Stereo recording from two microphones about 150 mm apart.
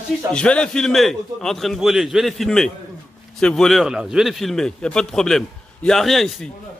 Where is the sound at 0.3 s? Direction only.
5° left (ahead or behind).